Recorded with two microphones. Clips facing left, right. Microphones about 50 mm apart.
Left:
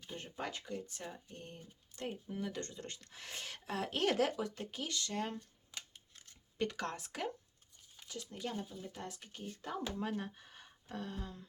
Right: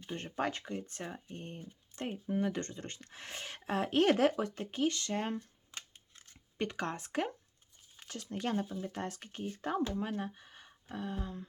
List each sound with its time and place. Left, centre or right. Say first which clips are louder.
0.2 s speech: right 7 dB; right
6.6 s speech: right 2 dB; right
7.9 s speech: right 5 dB; right
9.9 s speech: right 3 dB; centre